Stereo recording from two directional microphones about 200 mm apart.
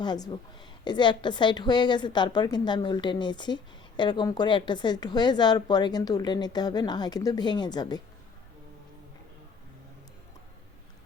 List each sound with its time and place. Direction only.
0.0 s a woman's voice: 20° left (ahead or behind)